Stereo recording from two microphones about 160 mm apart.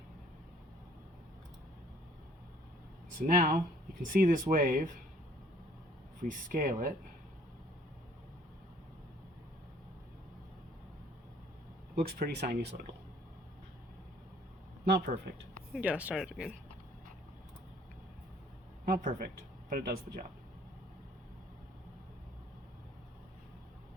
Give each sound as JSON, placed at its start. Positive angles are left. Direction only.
{"t": 3.2, "sound": "speech", "side_deg": -60}
{"t": 6.2, "sound": "speech", "side_deg": -60}
{"t": 12.0, "sound": "speech", "side_deg": -85}
{"t": 14.8, "sound": "speech", "side_deg": -80}
{"t": 15.7, "sound": "speech", "side_deg": -10}
{"t": 18.9, "sound": "speech", "side_deg": -75}